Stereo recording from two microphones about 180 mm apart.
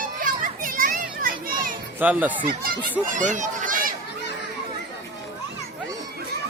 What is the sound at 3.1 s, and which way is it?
Speech, 45° right (ahead or behind).